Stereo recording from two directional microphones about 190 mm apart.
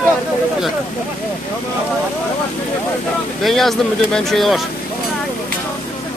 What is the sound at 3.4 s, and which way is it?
Speech, centre (ahead or behind).